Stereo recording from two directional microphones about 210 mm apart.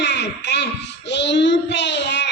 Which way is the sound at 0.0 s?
55° left (ahead or behind).